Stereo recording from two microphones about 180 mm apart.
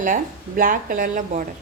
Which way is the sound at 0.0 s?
50° right (ahead or behind).